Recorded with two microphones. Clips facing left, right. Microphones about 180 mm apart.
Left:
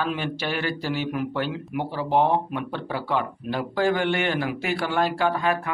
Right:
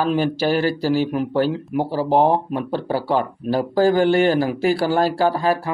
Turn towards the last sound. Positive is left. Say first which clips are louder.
# right 5 dB
turn(degrees=-35)  # may be behind; listen again after turning